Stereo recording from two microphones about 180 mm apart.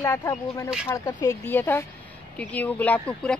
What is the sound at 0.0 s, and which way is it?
Speech, 15° left (ahead or behind).